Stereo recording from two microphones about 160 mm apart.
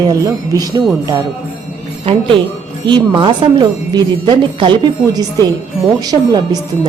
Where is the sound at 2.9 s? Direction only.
30° right (ahead or behind).